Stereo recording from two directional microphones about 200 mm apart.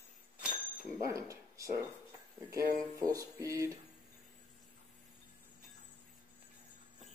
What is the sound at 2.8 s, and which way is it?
Music, 15° right (ahead or behind).